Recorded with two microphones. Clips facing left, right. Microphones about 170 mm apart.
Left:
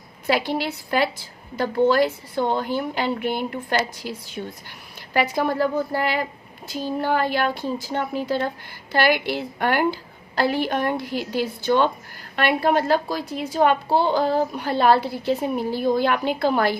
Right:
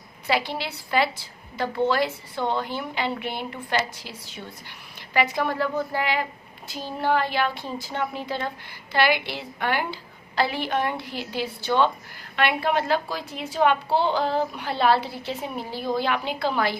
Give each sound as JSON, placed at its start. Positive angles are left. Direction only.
{"t": 0.3, "sound": "a woman's voice", "side_deg": 45}